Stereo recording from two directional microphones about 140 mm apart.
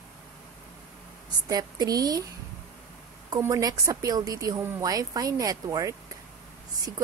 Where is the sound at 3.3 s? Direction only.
25° right (ahead or behind).